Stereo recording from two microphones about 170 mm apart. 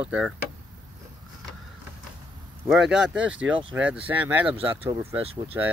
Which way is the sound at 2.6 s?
Centre (ahead or behind).